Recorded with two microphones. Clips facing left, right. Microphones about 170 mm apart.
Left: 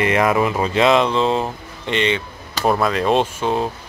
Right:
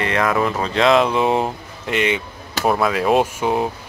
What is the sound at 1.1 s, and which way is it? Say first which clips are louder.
Speech: right 1 dB; 15° right (ahead or behind).